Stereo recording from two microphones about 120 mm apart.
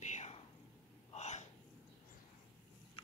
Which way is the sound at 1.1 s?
70° left (ahead or behind).